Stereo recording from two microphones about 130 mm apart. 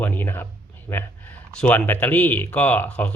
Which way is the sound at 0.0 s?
15° left (ahead or behind).